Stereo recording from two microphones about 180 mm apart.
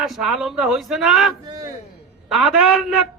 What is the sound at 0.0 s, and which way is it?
A man's voice, centre (ahead or behind).